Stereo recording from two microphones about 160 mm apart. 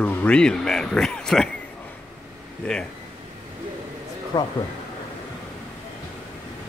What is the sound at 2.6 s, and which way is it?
Speech, 5° left (ahead or behind).